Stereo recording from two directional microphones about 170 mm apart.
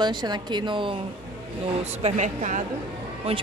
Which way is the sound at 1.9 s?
40° right (ahead or behind).